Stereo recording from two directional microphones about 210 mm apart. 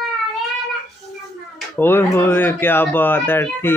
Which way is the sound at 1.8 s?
10° left (ahead or behind).